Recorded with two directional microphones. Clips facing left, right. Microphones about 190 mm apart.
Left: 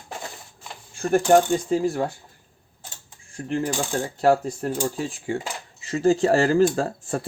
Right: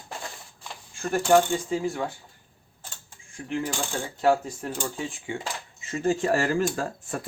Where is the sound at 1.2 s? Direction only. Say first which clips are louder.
Left 1 dB; 40° left (ahead or behind).